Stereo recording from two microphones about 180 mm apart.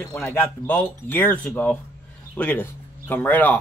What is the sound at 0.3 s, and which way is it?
Speech, 10° left (ahead or behind).